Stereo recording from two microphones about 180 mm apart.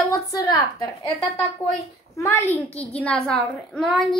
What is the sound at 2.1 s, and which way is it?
A child's voice, 15° left (ahead or behind).